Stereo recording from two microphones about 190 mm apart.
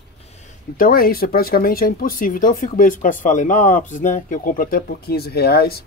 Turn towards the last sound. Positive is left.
turn(degrees=55)  # may be behind; listen again after turning